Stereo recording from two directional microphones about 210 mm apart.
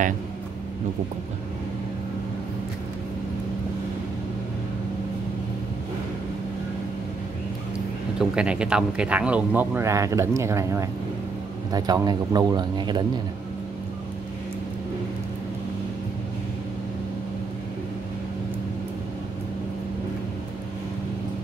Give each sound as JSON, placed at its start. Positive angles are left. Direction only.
{"t": 8.2, "sound": "speech", "side_deg": -5}